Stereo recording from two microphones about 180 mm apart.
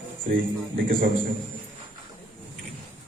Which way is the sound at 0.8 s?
50° right (ahead or behind).